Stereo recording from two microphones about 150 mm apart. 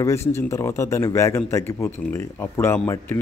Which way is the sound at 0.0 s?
15° left (ahead or behind).